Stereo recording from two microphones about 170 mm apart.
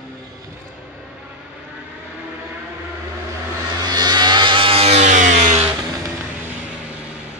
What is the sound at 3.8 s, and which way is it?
Vehicle, 25° right (ahead or behind).